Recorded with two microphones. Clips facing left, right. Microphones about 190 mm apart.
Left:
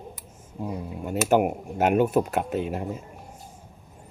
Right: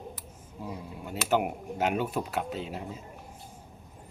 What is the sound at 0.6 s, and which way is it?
Speech, 45° left (ahead or behind).